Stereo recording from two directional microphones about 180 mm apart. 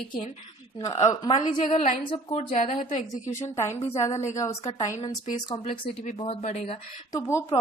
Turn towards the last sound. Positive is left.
turn(degrees=15)  # may be behind; listen again after turning